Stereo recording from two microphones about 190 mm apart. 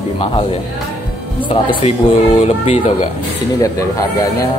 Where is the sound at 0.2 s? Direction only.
30° left (ahead or behind).